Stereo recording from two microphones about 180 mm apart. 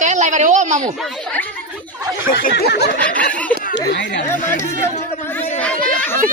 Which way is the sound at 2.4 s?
60° left (ahead or behind).